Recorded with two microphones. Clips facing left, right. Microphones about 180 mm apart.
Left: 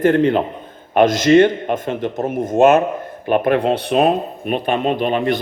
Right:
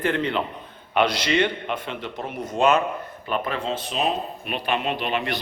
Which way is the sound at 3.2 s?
60° left (ahead or behind).